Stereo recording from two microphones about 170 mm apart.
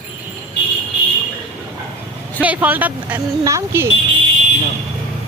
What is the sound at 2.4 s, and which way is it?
Speech, 10° right (ahead or behind).